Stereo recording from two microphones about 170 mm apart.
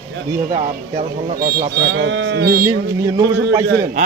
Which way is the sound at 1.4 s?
65° right (ahead or behind).